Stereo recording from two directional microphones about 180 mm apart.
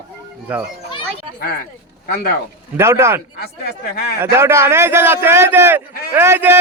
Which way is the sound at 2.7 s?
15° right (ahead or behind).